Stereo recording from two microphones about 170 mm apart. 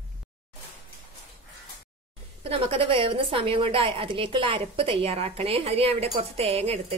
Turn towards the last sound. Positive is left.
turn(degrees=-35)  # may be behind; listen again after turning